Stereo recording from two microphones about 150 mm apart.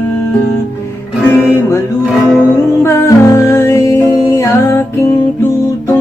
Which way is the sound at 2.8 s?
15° left (ahead or behind).